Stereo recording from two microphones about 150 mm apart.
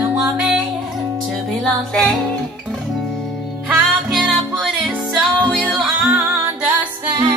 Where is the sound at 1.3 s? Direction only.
5° left (ahead or behind).